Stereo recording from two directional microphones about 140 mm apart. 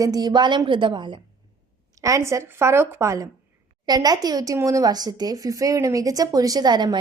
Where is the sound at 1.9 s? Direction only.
20° right (ahead or behind).